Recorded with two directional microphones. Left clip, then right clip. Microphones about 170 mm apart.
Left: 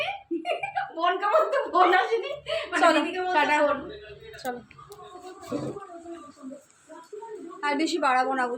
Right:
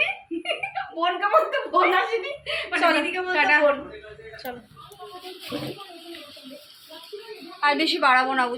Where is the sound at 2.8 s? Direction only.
15° left (ahead or behind).